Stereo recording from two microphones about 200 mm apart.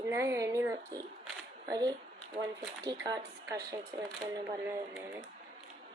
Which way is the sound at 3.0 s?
20° right (ahead or behind).